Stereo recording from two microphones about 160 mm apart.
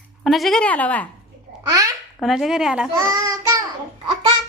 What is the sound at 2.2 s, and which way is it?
Speech, centre (ahead or behind).